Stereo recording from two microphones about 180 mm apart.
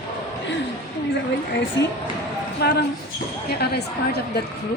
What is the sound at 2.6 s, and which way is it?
A woman's voice, 65° left (ahead or behind).